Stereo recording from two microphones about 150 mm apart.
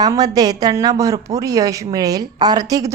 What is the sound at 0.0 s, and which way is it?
Speech, 25° right (ahead or behind).